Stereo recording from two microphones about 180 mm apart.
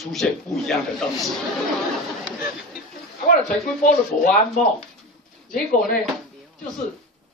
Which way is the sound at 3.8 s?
45° left (ahead or behind).